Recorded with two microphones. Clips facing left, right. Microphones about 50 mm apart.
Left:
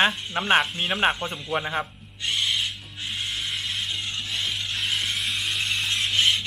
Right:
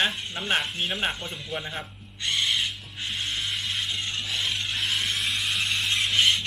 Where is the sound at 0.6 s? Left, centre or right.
Centre.